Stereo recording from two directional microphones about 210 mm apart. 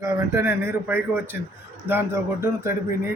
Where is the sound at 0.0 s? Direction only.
15° right (ahead or behind).